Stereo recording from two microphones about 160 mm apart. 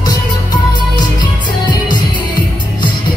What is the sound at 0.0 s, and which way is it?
Music, 25° left (ahead or behind).